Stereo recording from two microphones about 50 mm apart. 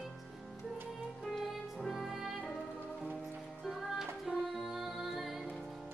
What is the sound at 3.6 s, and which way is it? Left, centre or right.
Music, centre.